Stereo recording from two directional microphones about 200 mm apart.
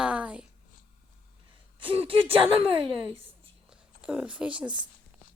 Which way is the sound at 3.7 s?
5° right (ahead or behind).